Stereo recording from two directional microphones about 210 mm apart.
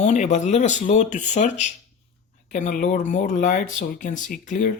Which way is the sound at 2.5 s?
35° left (ahead or behind).